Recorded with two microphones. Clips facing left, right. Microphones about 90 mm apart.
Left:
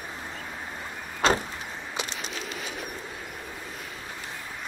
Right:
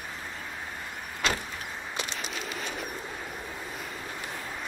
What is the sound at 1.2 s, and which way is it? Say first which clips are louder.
Vehicle: left 7 dB; 35° left (ahead or behind).